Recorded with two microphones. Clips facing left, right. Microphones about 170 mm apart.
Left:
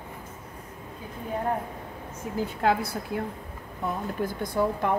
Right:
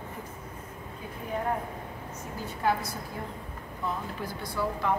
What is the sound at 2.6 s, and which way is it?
Speech, 75° left (ahead or behind).